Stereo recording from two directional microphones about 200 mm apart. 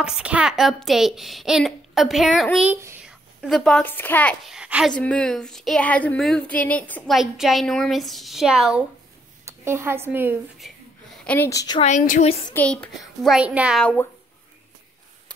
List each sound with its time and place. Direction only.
0.0 s speech: 5° right (ahead or behind)
3.4 s speech: centre (ahead or behind)
4.6 s speech: 5° right (ahead or behind)
11.1 s a woman's voice: 10° left (ahead or behind)
11.8 s a woman's voice: 40° left (ahead or behind)
12.5 s speech: 5° left (ahead or behind)